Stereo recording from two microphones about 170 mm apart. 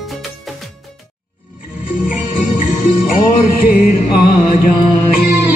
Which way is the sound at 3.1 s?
60° left (ahead or behind).